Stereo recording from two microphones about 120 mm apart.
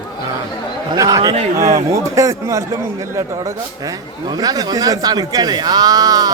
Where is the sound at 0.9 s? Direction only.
30° right (ahead or behind).